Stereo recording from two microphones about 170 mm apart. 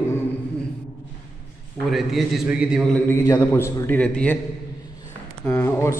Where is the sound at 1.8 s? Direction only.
Centre (ahead or behind).